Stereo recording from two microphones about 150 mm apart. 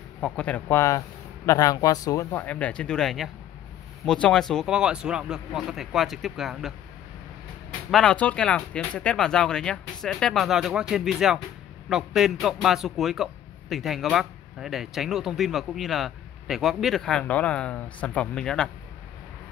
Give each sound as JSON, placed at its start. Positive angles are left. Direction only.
{"t": 0.2, "sound": "speech", "side_deg": 5}
{"t": 2.4, "sound": "a man's voice", "side_deg": 10}
{"t": 7.9, "sound": "a man's voice", "side_deg": 5}